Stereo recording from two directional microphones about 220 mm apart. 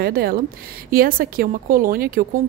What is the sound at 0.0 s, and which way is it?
A woman's voice, 45° right (ahead or behind).